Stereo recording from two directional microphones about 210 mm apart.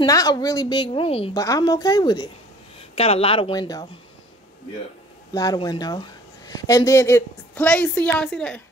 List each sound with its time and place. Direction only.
0.0 s a woman's voice: 15° left (ahead or behind)
1.4 s a woman's voice: 15° left (ahead or behind)
5.3 s speech: 20° left (ahead or behind)